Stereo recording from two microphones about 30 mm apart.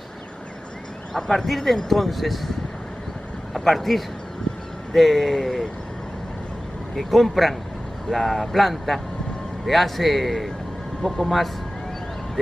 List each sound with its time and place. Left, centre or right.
1.1 s speech: centre
1.4 s a man's voice: centre
3.5 s a man's voice: centre
7.1 s a man's voice: centre